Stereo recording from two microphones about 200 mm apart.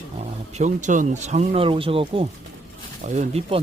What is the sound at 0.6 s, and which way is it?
Speech, 40° right (ahead or behind).